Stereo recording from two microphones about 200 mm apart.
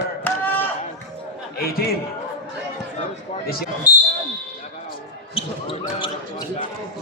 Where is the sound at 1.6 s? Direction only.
50° left (ahead or behind).